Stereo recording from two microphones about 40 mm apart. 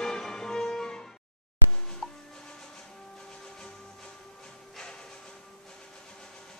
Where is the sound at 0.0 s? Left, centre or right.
Centre.